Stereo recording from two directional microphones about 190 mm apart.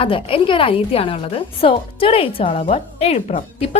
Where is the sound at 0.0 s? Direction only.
30° left (ahead or behind).